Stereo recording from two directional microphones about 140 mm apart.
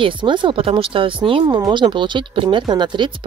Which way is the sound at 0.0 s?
35° right (ahead or behind).